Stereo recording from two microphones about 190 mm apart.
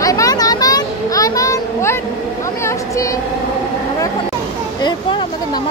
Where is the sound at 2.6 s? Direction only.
15° left (ahead or behind).